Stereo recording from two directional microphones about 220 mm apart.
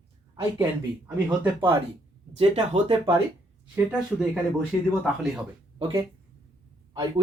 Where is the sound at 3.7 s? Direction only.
5° right (ahead or behind).